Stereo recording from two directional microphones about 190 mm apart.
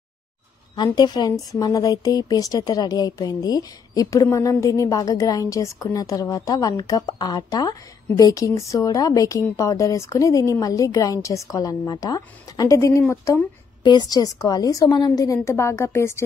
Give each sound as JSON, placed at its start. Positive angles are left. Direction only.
{"t": 0.7, "sound": "speech", "side_deg": 20}